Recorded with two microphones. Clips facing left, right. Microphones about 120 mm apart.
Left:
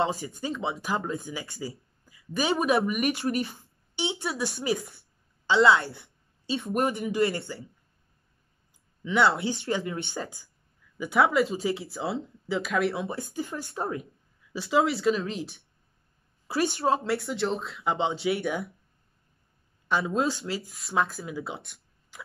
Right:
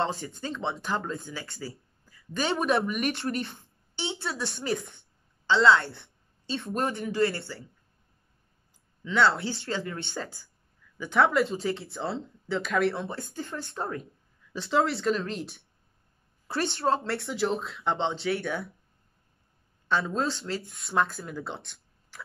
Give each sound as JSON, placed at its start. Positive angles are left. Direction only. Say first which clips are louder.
{"t": 0.0, "sound": "speech", "louder": "left 2 dB", "side_deg": 5}
{"t": 1.3, "sound": "speech", "louder": "left 2 dB", "side_deg": 15}
{"t": 5.5, "sound": "a woman's voice", "louder": "left 1 dB", "side_deg": 25}
{"t": 5.9, "sound": "speech", "louder": "left 1 dB", "side_deg": 5}
{"t": 9.0, "sound": "speech", "louder": "left 1 dB", "side_deg": 15}
{"t": 11.0, "sound": "speech", "louder": "left 1 dB", "side_deg": 5}
{"t": 19.9, "sound": "speech", "louder": "left 2 dB", "side_deg": 5}
{"t": 22.1, "sound": "a sound", "louder": "even", "side_deg": 15}